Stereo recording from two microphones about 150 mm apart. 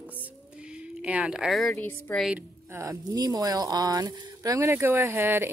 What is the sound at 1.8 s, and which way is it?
Speech, 10° left (ahead or behind).